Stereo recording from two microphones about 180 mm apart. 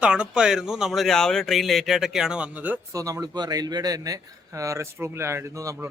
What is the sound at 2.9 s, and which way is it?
A man's voice, 20° right (ahead or behind).